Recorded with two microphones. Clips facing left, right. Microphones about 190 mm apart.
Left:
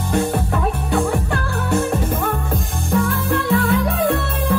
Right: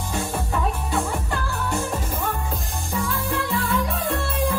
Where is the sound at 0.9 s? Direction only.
65° left (ahead or behind).